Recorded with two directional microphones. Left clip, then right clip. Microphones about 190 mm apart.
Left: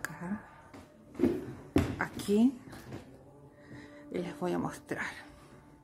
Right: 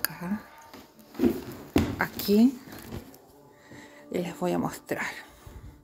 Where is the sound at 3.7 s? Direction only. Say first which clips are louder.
Right 6 dB; 10° right (ahead or behind).